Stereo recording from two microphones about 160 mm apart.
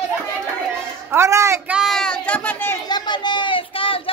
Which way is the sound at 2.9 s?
25° left (ahead or behind).